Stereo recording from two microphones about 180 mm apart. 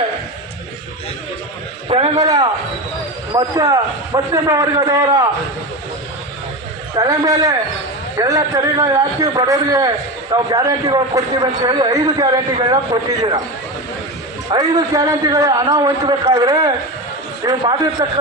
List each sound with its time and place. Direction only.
2.1 s a man's voice: 20° right (ahead or behind)
6.9 s a man's voice: 20° right (ahead or behind)
14.5 s a man's voice: 20° right (ahead or behind)